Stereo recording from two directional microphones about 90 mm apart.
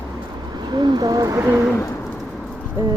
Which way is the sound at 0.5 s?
50° right (ahead or behind).